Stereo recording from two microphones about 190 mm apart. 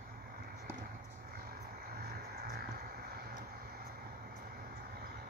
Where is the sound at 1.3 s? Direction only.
50° right (ahead or behind).